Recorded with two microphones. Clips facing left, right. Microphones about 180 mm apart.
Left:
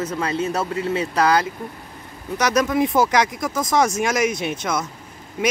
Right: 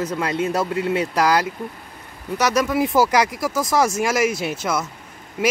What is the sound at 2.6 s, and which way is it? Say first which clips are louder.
Speech: even; 5° right (ahead or behind).